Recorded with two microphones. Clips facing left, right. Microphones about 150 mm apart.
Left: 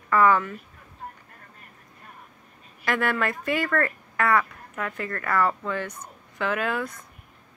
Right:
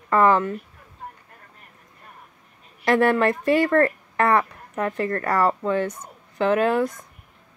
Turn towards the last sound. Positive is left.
turn(degrees=-35)  # may be behind; listen again after turning